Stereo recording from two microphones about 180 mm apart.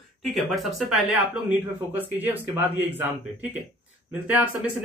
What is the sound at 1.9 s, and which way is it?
A man's voice, 10° right (ahead or behind).